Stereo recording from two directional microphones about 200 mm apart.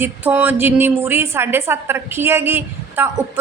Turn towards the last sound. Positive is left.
turn(degrees=-10)  # may be behind; listen again after turning